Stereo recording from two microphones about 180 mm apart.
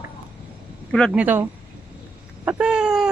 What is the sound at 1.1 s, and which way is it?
Speech, 10° right (ahead or behind).